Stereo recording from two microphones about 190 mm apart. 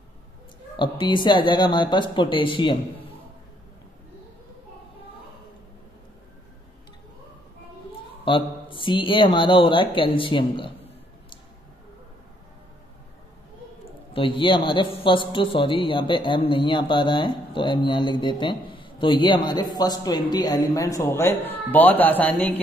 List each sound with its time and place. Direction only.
0.7 s a man's voice: 25° left (ahead or behind)
8.3 s a man's voice: 25° left (ahead or behind)
14.1 s a man's voice: 25° left (ahead or behind); by 22.6 s 10° left (ahead or behind)